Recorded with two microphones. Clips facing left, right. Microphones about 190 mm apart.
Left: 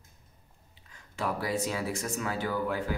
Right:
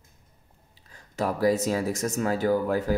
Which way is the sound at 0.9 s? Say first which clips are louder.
Right 5 dB; 40° right (ahead or behind).